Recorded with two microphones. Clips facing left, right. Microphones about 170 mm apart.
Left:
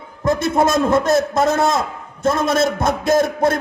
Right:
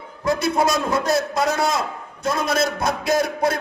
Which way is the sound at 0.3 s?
45° left (ahead or behind).